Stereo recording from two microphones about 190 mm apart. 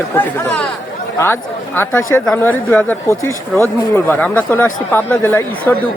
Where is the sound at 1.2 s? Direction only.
10° left (ahead or behind).